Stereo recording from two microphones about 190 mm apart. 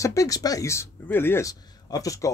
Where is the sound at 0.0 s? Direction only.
15° left (ahead or behind).